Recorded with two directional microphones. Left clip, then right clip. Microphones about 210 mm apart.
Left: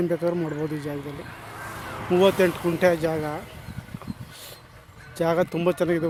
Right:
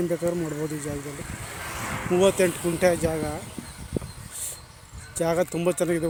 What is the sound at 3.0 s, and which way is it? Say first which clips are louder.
Speech: left 1 dB; centre (ahead or behind).